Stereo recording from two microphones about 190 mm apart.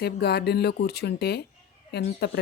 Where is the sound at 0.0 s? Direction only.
60° left (ahead or behind).